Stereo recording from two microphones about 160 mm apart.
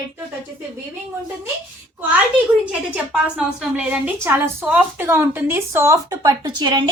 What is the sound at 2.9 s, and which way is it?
A woman's voice, 5° right (ahead or behind).